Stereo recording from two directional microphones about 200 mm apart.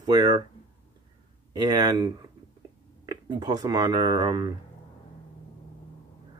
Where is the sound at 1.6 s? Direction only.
20° right (ahead or behind).